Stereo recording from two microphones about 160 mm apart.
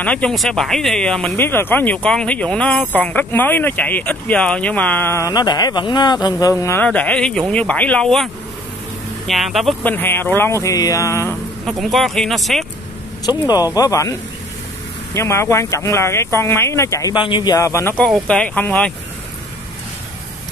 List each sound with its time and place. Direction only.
0.0 s speech: 5° left (ahead or behind)
9.3 s speech: centre (ahead or behind)
9.8 s speech: 15° left (ahead or behind)
11.6 s speech: centre (ahead or behind)
13.2 s speech: 25° left (ahead or behind)
15.1 s speech: 15° left (ahead or behind)
17.1 s speech: 30° left (ahead or behind)
18.0 s speech: 5° left (ahead or behind)